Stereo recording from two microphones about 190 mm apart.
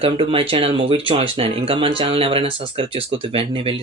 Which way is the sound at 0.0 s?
30° right (ahead or behind).